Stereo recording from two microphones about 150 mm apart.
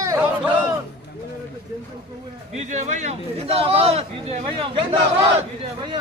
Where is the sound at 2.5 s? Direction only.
50° right (ahead or behind).